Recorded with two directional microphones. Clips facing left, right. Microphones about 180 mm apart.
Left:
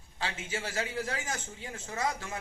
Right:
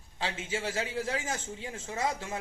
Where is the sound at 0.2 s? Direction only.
25° right (ahead or behind).